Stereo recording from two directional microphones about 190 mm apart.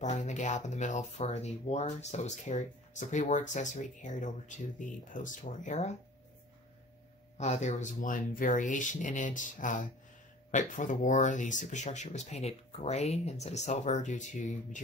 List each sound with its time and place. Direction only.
0.0 s speech: 40° left (ahead or behind)
7.3 s speech: 35° left (ahead or behind)